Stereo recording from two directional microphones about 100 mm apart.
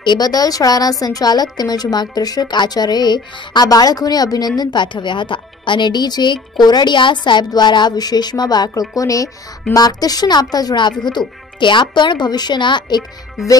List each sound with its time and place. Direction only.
0.0 s speech: 45° left (ahead or behind)